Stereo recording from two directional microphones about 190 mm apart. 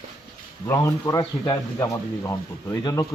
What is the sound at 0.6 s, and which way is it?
A man's voice, 15° left (ahead or behind).